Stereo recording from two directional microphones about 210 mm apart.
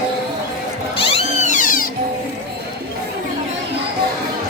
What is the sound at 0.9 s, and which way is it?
Cat, 25° left (ahead or behind).